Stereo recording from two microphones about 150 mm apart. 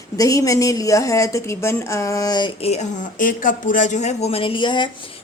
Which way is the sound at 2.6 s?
45° left (ahead or behind).